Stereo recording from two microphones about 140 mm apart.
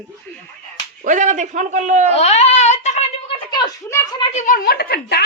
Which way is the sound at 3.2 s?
35° left (ahead or behind).